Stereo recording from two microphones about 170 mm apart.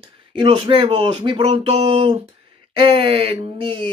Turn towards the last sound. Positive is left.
turn(degrees=-30)  # may be behind; listen again after turning